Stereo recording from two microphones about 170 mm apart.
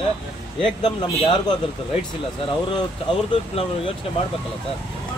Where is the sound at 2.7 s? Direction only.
30° left (ahead or behind).